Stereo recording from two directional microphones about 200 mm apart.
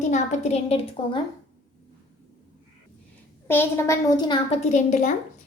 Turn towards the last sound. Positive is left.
turn(degrees=40)  # may be behind; listen again after turning